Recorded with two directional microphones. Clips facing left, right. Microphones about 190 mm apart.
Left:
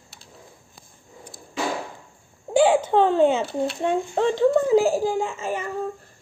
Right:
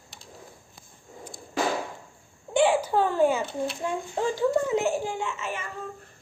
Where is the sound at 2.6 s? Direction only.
25° left (ahead or behind).